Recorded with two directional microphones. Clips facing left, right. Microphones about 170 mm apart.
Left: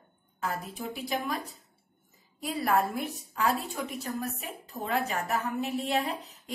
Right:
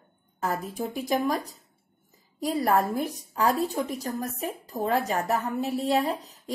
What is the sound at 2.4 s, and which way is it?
A woman's voice, 40° right (ahead or behind).